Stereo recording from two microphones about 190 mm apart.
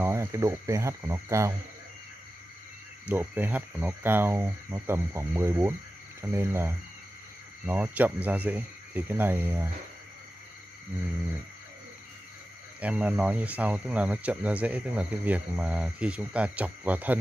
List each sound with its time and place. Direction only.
0.0 s speech: 15° right (ahead or behind)
3.1 s speech: 10° right (ahead or behind)
12.8 s speech: 5° right (ahead or behind)